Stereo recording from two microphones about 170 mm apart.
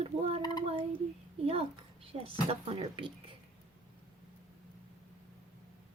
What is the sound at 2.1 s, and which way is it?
A woman's voice, 35° right (ahead or behind).